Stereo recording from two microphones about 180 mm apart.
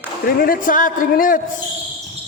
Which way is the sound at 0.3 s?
55° left (ahead or behind).